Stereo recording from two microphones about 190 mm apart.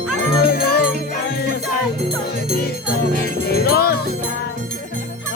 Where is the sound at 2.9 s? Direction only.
50° left (ahead or behind).